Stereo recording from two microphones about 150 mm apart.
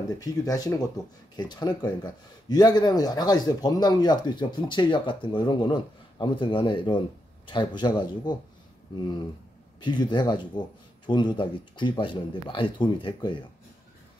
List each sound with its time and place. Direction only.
0.2 s speech: 25° left (ahead or behind)
9.8 s speech: 30° left (ahead or behind)